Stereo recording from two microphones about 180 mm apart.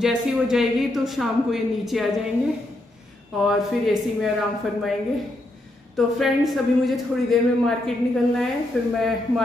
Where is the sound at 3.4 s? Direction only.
Centre (ahead or behind).